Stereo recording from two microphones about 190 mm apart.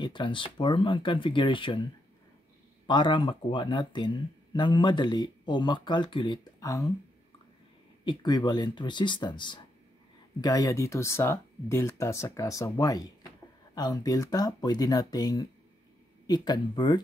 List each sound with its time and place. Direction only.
0.0 s speech: 25° left (ahead or behind)
2.9 s speech: 25° left (ahead or behind)
8.0 s speech: 25° left (ahead or behind)